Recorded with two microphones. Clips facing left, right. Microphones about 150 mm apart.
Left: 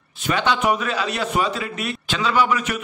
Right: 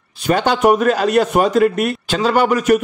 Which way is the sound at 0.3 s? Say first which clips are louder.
Right 7 dB; 45° right (ahead or behind).